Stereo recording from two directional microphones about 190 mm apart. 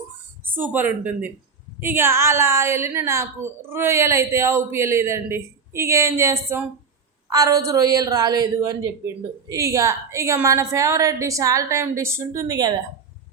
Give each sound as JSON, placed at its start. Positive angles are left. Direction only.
{"t": 0.4, "sound": "a woman's voice", "side_deg": -10}